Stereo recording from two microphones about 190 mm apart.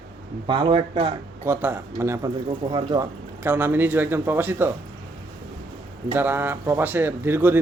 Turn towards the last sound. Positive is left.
turn(degrees=-10)  # may be behind; listen again after turning